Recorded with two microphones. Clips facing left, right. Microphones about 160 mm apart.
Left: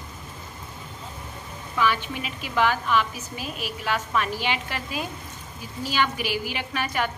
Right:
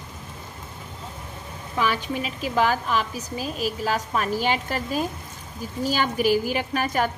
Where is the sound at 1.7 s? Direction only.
40° right (ahead or behind).